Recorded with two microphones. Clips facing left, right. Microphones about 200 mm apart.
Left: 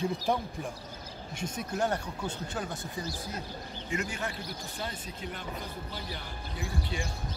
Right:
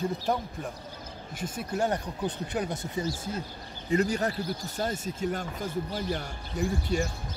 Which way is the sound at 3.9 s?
40° right (ahead or behind).